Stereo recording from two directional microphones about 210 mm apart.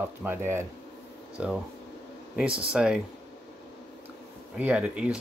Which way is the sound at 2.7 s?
5° right (ahead or behind).